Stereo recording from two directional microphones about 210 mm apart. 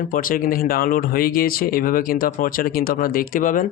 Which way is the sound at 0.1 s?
40° left (ahead or behind).